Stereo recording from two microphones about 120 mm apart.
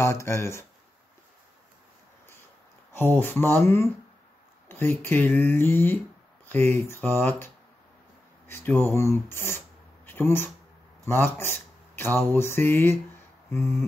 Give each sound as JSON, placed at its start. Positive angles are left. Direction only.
{"t": 0.0, "sound": "speech", "side_deg": 20}
{"t": 2.9, "sound": "speech", "side_deg": 15}